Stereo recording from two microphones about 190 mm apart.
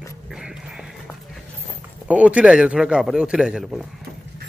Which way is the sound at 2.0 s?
5° right (ahead or behind).